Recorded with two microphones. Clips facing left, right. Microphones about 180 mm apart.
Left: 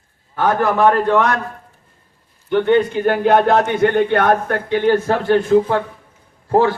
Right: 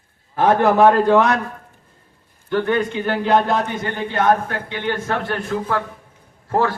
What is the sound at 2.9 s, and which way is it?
A man's voice, 50° left (ahead or behind).